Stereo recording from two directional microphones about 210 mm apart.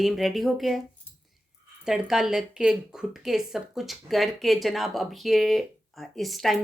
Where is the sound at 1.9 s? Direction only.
Centre (ahead or behind).